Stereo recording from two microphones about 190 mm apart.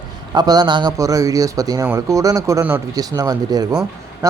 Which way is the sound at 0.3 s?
20° right (ahead or behind).